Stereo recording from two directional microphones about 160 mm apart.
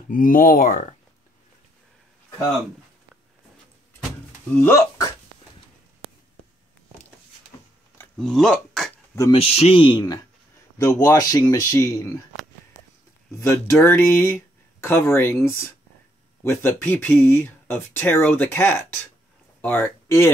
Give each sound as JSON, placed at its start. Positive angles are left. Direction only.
{"t": 0.1, "sound": "speech", "side_deg": 60}
{"t": 4.6, "sound": "speech", "side_deg": 15}
{"t": 8.2, "sound": "speech", "side_deg": 5}
{"t": 9.3, "sound": "speech", "side_deg": 35}
{"t": 13.4, "sound": "speech", "side_deg": 15}
{"t": 16.4, "sound": "speech", "side_deg": 15}